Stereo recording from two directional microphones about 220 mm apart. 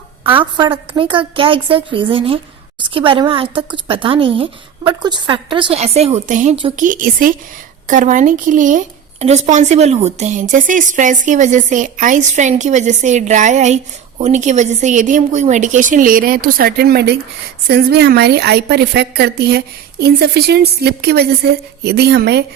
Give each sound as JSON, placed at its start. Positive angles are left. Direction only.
{"t": 0.3, "sound": "a woman's voice", "side_deg": -20}